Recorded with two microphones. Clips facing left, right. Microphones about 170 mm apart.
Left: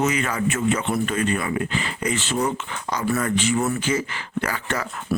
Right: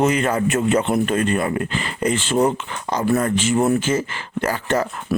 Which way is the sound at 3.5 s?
45° right (ahead or behind).